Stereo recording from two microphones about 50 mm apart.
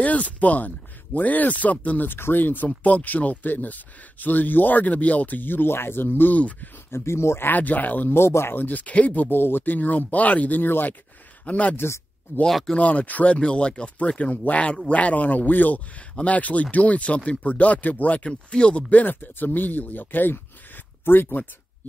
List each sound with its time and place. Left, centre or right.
0.0 s speech: left
2.1 s speech: left
6.3 s speech: left
6.9 s speech: left
7.4 s speech: left
8.1 s speech: left
8.5 s speech: left
11.4 s speech: left
12.4 s speech: centre
12.7 s speech: left